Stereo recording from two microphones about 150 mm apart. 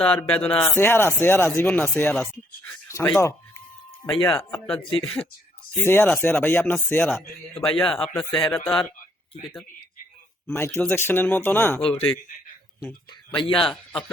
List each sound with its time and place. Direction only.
0.0 s speech: 5° left (ahead or behind)
0.6 s speech: 15° left (ahead or behind)
4.5 s speech: 5° left (ahead or behind)
4.8 s speech: 35° left (ahead or behind)
5.7 s speech: 15° left (ahead or behind)
8.2 s speech: 30° left (ahead or behind)
8.4 s speech: 15° left (ahead or behind)
10.5 s speech: 15° left (ahead or behind)
11.8 s speech: 40° left (ahead or behind)
13.3 s speech: 35° left (ahead or behind)